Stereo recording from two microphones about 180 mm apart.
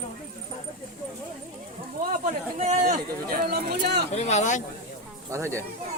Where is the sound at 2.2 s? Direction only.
40° right (ahead or behind); by 4.1 s 65° right (ahead or behind).